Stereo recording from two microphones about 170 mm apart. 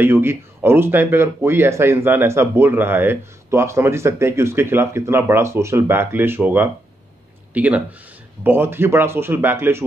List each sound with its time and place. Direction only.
0.0 s speech: 15° right (ahead or behind)